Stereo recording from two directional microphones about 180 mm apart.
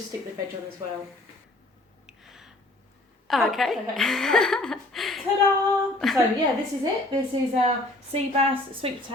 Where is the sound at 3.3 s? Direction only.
Centre (ahead or behind).